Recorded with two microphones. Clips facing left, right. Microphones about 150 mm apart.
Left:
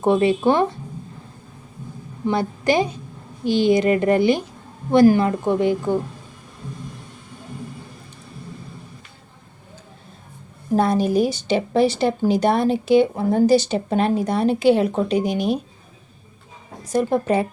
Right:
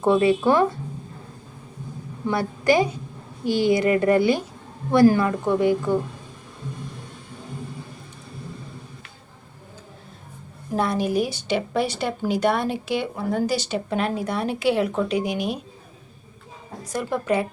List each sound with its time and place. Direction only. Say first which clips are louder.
0.0 s a woman's voice: left 1 dB; 25° left (ahead or behind)
2.2 s a woman's voice: left 1 dB; 25° left (ahead or behind)
10.8 s a woman's voice: left 4 dB; 40° left (ahead or behind)
15.2 s speech: left 4 dB; centre (ahead or behind)
17.0 s a woman's voice: left 5 dB; 40° left (ahead or behind)